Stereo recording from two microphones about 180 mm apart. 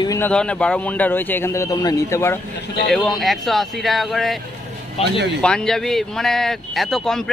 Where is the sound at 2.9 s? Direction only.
5° left (ahead or behind).